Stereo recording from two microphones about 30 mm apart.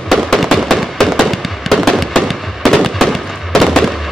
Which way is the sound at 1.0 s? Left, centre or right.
Centre.